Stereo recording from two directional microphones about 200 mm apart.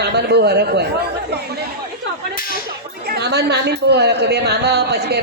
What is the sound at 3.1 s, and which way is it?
A woman's voice, 55° right (ahead or behind).